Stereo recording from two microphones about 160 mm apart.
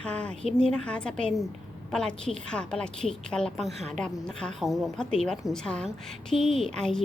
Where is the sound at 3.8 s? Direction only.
45° right (ahead or behind).